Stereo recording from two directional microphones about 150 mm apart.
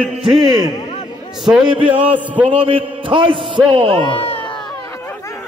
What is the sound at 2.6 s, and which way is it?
A man's voice, 35° right (ahead or behind).